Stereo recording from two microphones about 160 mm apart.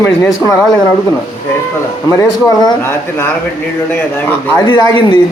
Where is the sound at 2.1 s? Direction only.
25° left (ahead or behind).